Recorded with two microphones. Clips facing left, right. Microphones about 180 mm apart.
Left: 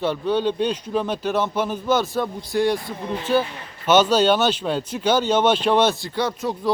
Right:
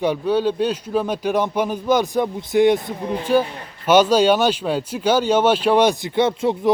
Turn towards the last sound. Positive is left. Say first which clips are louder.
# right 6 dB
turn(degrees=-25)  # may be behind; listen again after turning